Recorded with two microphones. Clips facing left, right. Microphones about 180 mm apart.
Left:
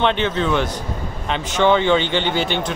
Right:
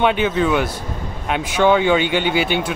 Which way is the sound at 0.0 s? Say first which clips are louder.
Right 2 dB; 10° right (ahead or behind).